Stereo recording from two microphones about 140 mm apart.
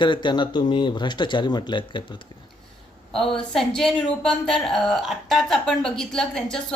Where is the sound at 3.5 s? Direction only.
5° left (ahead or behind).